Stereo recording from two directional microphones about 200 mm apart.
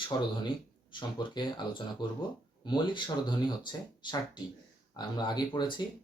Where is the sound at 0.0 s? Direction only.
25° left (ahead or behind).